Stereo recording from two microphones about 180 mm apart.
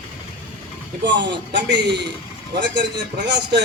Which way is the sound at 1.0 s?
75° right (ahead or behind).